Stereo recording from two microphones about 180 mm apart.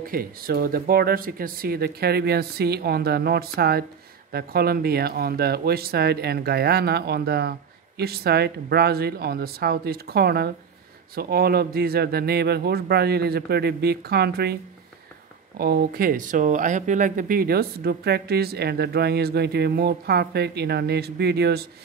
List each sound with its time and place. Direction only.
0.0 s speech: 55° right (ahead or behind)